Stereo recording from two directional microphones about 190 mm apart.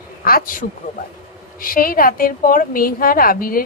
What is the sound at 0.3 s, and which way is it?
A woman's voice, 50° left (ahead or behind).